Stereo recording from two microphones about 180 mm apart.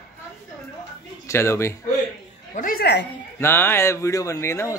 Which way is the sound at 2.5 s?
50° left (ahead or behind).